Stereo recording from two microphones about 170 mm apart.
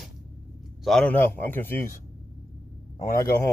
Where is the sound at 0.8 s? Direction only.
5° left (ahead or behind).